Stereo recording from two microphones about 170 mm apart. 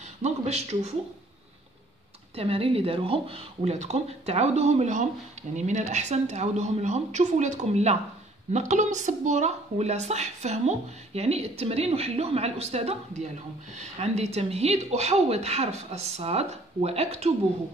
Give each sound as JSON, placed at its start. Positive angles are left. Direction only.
{"t": 0.2, "sound": "speech", "side_deg": -40}
{"t": 2.3, "sound": "a woman's voice", "side_deg": -35}